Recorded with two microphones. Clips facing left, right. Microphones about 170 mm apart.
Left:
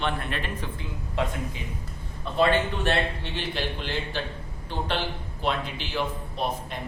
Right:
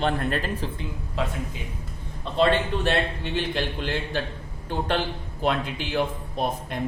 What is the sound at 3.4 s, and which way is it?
A man's voice, 50° right (ahead or behind).